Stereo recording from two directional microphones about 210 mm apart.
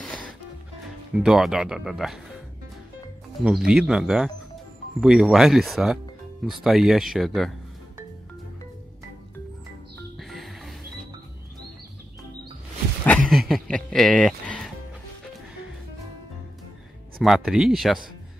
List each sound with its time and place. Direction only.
1.1 s speech: centre (ahead or behind)
10.1 s music: centre (ahead or behind)
13.0 s music: 5° left (ahead or behind)
17.2 s speech: centre (ahead or behind)